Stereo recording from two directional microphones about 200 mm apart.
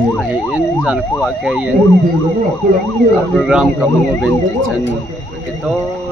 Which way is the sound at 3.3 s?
5° right (ahead or behind).